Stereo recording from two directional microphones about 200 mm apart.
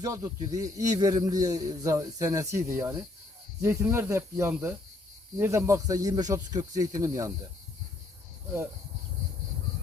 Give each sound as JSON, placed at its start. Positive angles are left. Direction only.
{"t": 0.0, "sound": "a man's voice", "side_deg": -15}